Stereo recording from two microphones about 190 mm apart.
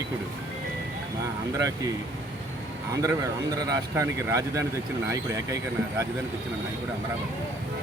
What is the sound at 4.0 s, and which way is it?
Speech, 15° right (ahead or behind).